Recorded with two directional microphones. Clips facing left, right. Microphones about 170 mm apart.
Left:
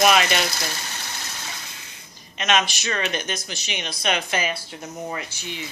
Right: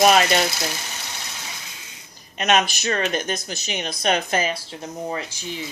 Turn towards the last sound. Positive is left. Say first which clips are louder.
# right 3 dB
turn(degrees=-35)  # may be behind; listen again after turning